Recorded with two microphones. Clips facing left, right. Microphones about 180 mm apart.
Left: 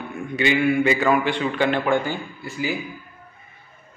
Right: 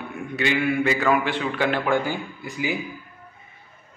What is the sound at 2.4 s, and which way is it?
Speech, 15° right (ahead or behind).